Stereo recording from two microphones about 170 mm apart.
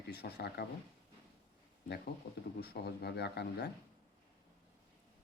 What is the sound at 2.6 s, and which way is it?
Speech, 70° left (ahead or behind).